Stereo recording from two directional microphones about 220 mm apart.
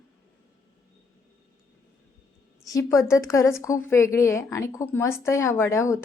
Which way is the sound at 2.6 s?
15° left (ahead or behind).